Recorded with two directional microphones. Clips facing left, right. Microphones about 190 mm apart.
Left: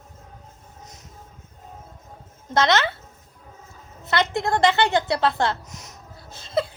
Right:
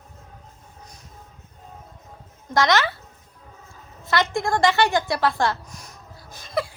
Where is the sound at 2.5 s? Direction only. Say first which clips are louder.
Even; 20° left (ahead or behind).